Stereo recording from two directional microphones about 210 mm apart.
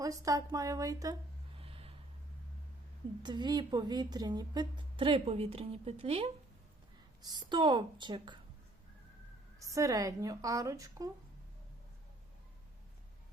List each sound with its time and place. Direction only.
0.0 s speech: 15° right (ahead or behind)
1.5 s snort: 25° right (ahead or behind)
3.2 s a woman's voice: 20° right (ahead or behind)
9.6 s speech: 15° right (ahead or behind)